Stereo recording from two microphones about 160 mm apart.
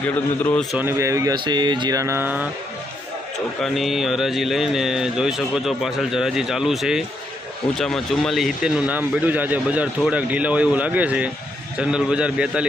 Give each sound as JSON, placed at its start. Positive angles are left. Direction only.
{"t": 0.0, "sound": "a man's voice", "side_deg": 10}
{"t": 0.7, "sound": "speech", "side_deg": -15}
{"t": 3.6, "sound": "speech", "side_deg": 0}